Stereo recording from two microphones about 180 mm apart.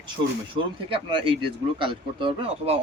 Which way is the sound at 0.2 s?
25° right (ahead or behind).